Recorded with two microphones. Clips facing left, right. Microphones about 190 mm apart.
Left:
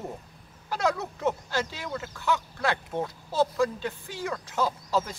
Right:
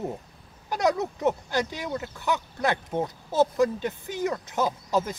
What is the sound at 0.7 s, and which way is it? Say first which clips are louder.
Speech: right 3 dB; 20° right (ahead or behind).